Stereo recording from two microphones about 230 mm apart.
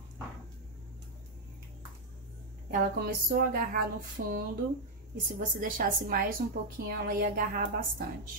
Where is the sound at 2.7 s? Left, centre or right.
Right.